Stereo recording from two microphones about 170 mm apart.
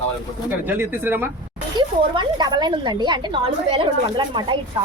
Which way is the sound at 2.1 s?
25° right (ahead or behind).